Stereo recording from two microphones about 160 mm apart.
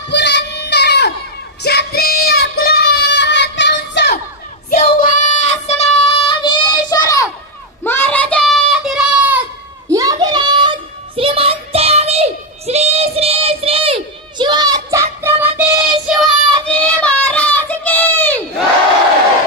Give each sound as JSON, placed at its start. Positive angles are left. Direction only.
{"t": 0.1, "sound": "child singing", "side_deg": 90}
{"t": 5.0, "sound": "child singing", "side_deg": 50}
{"t": 7.8, "sound": "a sound", "side_deg": 15}
{"t": 9.8, "sound": "a sound", "side_deg": -20}
{"t": 15.2, "sound": "music", "side_deg": -10}
{"t": 16.1, "sound": "child singing", "side_deg": 0}